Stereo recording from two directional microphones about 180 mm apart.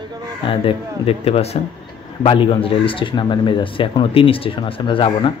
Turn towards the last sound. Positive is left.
turn(degrees=30)  # may be behind; listen again after turning